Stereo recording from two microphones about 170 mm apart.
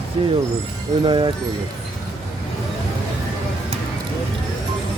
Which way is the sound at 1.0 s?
30° right (ahead or behind).